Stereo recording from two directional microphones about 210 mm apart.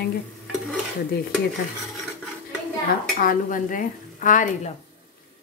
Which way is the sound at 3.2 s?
40° left (ahead or behind).